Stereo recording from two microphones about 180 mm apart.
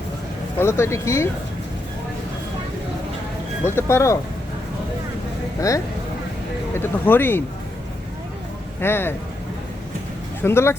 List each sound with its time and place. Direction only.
0.6 s speech: 15° left (ahead or behind)
3.8 s speech: 15° left (ahead or behind)
5.5 s speech: 20° left (ahead or behind)
8.8 s speech: 10° left (ahead or behind)
10.4 s speech: 15° left (ahead or behind)